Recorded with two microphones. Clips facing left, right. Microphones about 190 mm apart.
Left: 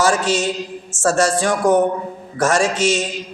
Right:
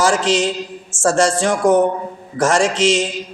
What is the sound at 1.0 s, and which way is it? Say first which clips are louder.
A man's voice: right 1 dB; 30° right (ahead or behind).